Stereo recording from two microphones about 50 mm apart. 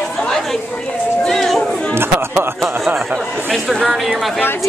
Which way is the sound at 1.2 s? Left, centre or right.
Centre.